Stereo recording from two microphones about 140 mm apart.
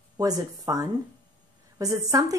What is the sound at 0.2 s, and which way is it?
A woman's voice, 25° right (ahead or behind).